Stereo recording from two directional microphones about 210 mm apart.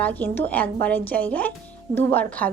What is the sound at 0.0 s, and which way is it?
A woman's voice, 10° left (ahead or behind).